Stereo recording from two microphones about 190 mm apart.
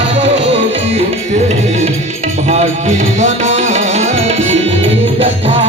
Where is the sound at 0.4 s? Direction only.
35° right (ahead or behind).